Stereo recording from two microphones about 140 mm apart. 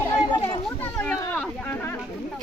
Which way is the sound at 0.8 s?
10° left (ahead or behind).